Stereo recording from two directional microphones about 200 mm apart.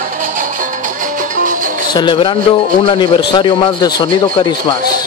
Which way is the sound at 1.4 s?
40° right (ahead or behind).